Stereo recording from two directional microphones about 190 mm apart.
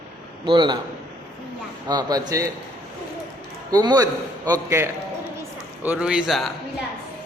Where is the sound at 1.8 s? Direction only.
20° right (ahead or behind).